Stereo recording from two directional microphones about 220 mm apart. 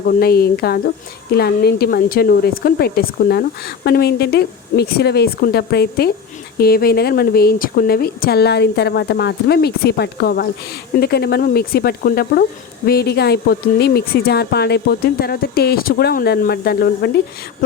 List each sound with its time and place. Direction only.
0.0 s speech: 45° left (ahead or behind)